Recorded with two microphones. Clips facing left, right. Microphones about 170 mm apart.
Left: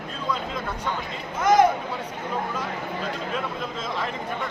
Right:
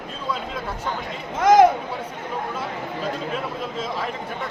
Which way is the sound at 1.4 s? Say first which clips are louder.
Right 4 dB; 90° right.